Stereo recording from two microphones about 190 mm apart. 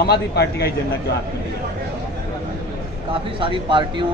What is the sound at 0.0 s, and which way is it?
Speech, 60° left (ahead or behind).